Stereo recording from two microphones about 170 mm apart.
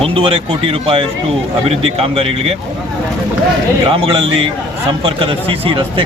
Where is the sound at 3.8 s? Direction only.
35° right (ahead or behind).